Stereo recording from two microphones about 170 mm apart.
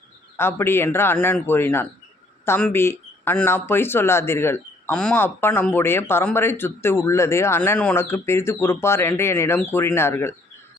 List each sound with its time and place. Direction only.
0.3 s speech: 15° left (ahead or behind)